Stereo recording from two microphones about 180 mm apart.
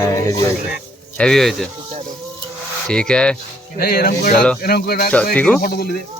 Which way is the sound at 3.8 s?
60° left (ahead or behind).